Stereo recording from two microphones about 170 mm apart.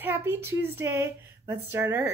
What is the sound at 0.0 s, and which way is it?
Speech, 15° right (ahead or behind).